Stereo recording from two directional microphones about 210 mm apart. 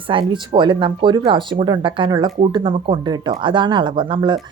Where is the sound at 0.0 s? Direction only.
25° right (ahead or behind).